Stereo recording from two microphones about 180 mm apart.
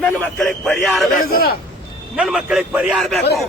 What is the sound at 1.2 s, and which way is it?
Speech, 55° left (ahead or behind).